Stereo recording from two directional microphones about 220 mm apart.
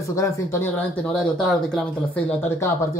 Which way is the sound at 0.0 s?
15° left (ahead or behind).